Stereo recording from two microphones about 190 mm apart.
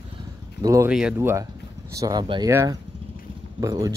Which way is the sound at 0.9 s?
5° right (ahead or behind).